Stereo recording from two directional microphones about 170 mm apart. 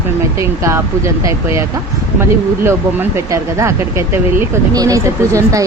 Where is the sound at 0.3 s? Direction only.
15° right (ahead or behind).